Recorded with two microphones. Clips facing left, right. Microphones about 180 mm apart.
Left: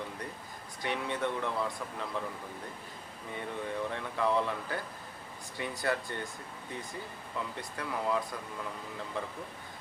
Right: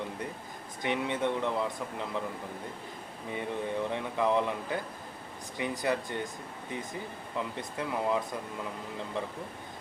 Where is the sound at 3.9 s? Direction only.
20° right (ahead or behind).